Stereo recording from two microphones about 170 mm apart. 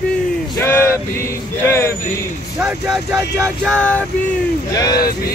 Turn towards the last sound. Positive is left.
turn(degrees=20)  # may be behind; listen again after turning